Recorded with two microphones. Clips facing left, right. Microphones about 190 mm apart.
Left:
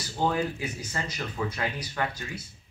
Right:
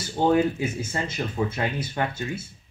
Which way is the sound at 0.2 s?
25° right (ahead or behind).